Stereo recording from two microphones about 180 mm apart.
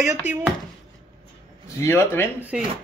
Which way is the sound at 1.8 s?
15° left (ahead or behind).